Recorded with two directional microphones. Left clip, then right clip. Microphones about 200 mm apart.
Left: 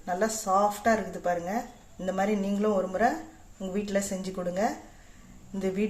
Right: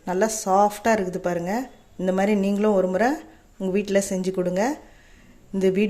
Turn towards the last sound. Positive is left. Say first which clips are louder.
# right 9 dB
turn(degrees=-50)  # may be behind; listen again after turning